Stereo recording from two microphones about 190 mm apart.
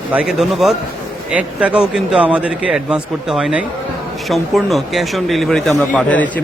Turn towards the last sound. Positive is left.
turn(degrees=5)  # may be behind; listen again after turning